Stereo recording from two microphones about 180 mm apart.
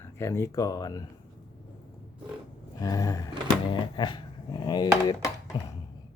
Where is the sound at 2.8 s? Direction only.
20° left (ahead or behind).